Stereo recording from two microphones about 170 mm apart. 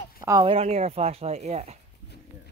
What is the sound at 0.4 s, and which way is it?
Speech, 35° right (ahead or behind).